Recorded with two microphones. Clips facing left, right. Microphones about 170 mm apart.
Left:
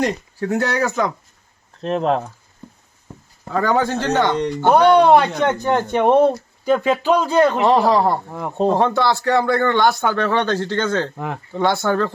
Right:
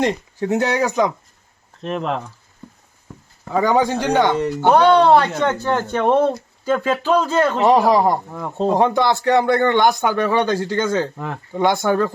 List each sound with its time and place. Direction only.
0.0 s speech: 20° right (ahead or behind)
1.8 s speech: 35° left (ahead or behind)
3.5 s speech: 15° right (ahead or behind)
4.8 s speech: 10° left (ahead or behind)
7.6 s speech: 15° right (ahead or behind)
8.3 s speech: 15° left (ahead or behind)
8.7 s speech: 15° right (ahead or behind)